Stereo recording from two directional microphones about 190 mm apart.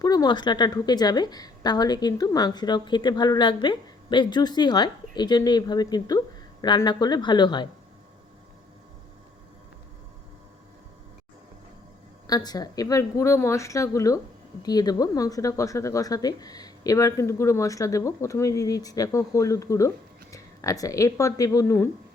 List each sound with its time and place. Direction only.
0.0 s a woman's voice: 20° left (ahead or behind)
12.3 s speech: 20° left (ahead or behind)